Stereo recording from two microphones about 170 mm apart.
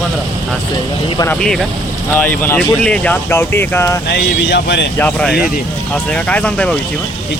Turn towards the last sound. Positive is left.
turn(degrees=5)  # may be behind; listen again after turning